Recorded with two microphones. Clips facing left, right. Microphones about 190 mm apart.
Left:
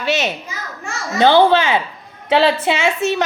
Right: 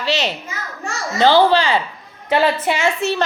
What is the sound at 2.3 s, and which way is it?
Speech, 80° left.